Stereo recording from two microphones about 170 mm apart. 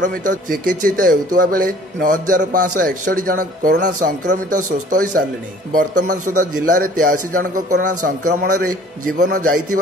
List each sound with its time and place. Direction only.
0.0 s a man's voice: 55° right (ahead or behind)